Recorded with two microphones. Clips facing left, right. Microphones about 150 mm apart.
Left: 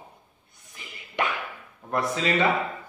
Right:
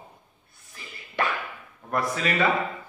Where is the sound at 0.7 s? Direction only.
20° left (ahead or behind).